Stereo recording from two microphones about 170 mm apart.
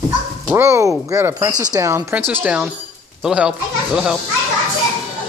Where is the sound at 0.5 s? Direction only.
15° right (ahead or behind).